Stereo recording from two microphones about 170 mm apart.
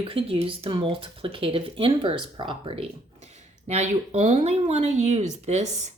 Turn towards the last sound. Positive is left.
turn(degrees=-40)  # may be behind; listen again after turning